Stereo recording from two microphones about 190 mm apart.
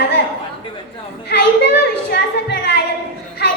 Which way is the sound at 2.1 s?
60° left (ahead or behind).